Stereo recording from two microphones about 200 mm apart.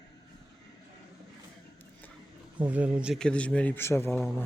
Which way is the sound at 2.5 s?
5° right (ahead or behind).